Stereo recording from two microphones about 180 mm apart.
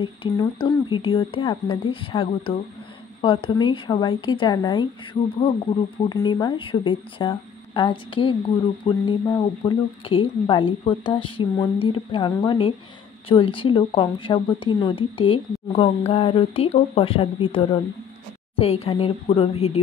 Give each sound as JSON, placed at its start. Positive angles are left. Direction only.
{"t": 0.0, "sound": "speech", "side_deg": 25}
{"t": 6.0, "sound": "speech", "side_deg": 25}